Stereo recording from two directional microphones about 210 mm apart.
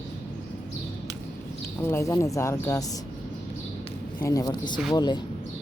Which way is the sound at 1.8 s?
10° left (ahead or behind).